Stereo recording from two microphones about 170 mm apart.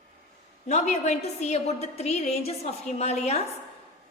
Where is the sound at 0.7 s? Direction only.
40° left (ahead or behind).